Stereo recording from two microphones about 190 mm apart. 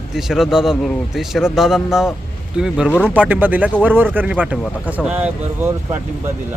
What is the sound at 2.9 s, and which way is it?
Speech, 5° left (ahead or behind).